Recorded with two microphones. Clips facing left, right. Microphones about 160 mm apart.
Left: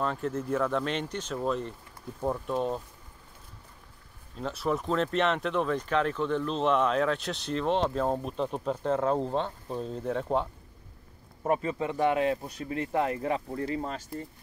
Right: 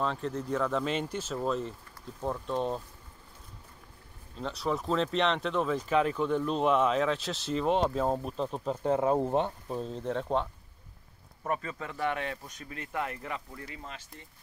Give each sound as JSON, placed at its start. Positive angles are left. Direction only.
{"t": 0.0, "sound": "speech", "side_deg": 5}
{"t": 2.1, "sound": "speech", "side_deg": 10}
{"t": 4.4, "sound": "speech", "side_deg": 0}
{"t": 8.8, "sound": "speech", "side_deg": -10}
{"t": 9.8, "sound": "speech", "side_deg": 5}
{"t": 11.4, "sound": "speech", "side_deg": 25}
{"t": 13.5, "sound": "speech", "side_deg": 40}